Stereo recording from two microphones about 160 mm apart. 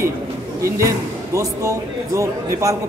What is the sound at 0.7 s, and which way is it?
A man's voice, 20° right (ahead or behind).